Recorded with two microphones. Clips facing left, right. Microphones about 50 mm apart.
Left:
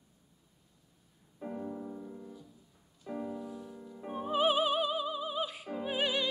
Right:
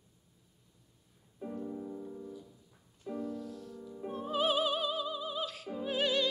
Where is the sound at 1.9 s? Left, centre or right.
Centre.